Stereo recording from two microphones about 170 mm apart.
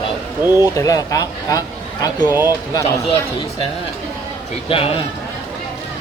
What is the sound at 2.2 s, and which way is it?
Speech, 15° right (ahead or behind).